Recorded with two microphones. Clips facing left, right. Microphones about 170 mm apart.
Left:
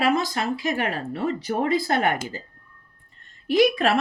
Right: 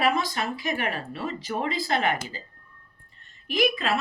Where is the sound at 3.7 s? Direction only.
80° left.